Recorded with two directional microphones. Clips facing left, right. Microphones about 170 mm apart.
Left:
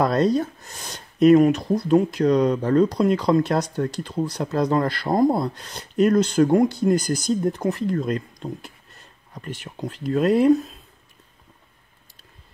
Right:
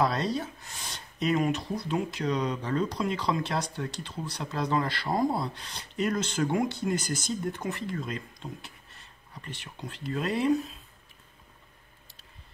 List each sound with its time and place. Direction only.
0.0 s speech: 45° left (ahead or behind)